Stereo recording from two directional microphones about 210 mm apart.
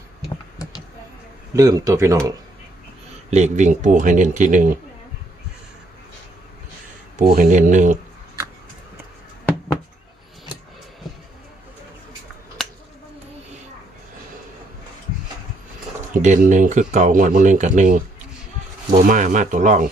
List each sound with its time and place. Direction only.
1.5 s speech: 15° right (ahead or behind)
3.2 s speech: 30° right (ahead or behind)
7.2 s speech: 35° right (ahead or behind)
16.1 s speech: 35° right (ahead or behind)